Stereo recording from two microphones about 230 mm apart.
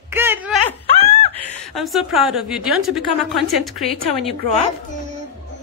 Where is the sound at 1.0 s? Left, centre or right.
Left.